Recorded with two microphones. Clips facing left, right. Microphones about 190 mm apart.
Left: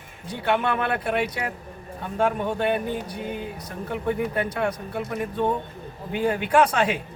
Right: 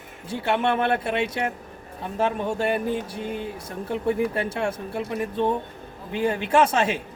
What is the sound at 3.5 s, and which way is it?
Speech, 30° right (ahead or behind).